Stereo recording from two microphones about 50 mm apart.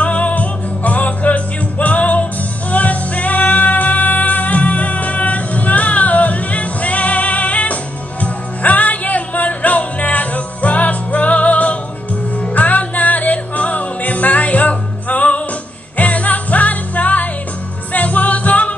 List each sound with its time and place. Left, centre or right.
0.0 s music: left